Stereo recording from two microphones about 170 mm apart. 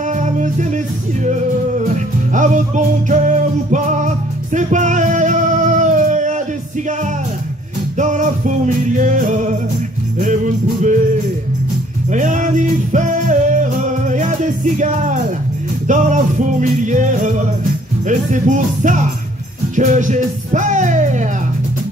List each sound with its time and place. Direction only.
0.1 s music: 45° right (ahead or behind)
2.3 s music: 45° right (ahead or behind)
8.0 s music: 45° right (ahead or behind)
10.2 s jingle bell: 45° right (ahead or behind)
12.1 s music: 45° right (ahead or behind)
18.0 s music: 45° right (ahead or behind)